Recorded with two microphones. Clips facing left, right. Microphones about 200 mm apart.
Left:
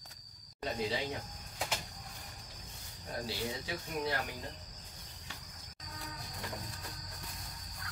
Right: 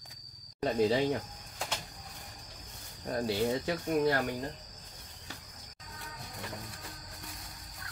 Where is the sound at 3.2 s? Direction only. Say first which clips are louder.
Right 10 dB; 55° right (ahead or behind).